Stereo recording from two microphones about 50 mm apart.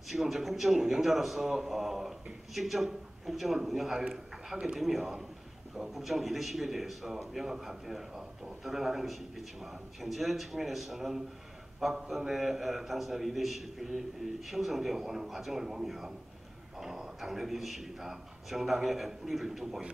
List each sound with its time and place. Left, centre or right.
0.1 s a man's voice: centre
4.7 s a man's voice: centre